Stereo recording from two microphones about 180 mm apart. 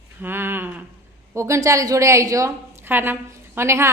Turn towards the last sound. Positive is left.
turn(degrees=-15)  # may be behind; listen again after turning